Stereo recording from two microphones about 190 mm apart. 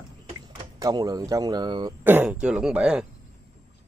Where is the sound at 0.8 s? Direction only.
20° right (ahead or behind).